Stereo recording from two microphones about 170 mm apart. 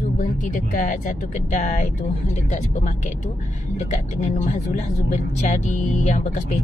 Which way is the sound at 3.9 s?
45° left (ahead or behind).